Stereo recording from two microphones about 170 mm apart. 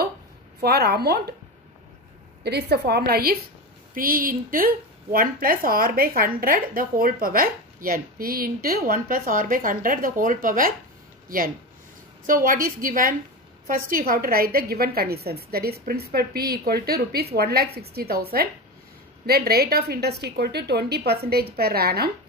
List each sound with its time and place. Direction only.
0.6 s a woman's voice: 70° right (ahead or behind)
2.4 s a woman's voice: 75° right (ahead or behind)